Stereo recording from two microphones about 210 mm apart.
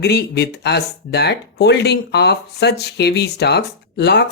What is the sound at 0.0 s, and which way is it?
Speech, 55° left (ahead or behind).